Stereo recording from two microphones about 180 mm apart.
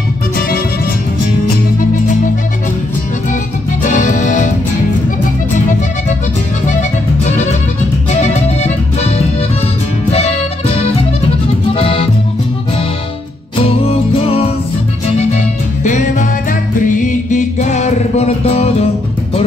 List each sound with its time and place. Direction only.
3.8 s music: 45° left (ahead or behind)
8.1 s music: 40° left (ahead or behind)
13.8 s music: 30° left (ahead or behind)
15.8 s music: 40° left (ahead or behind)